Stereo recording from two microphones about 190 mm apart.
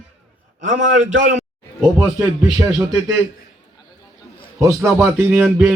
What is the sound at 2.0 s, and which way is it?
Speech, 15° right (ahead or behind).